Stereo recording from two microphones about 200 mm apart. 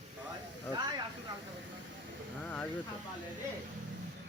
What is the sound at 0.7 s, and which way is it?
Hiss, 20° right (ahead or behind).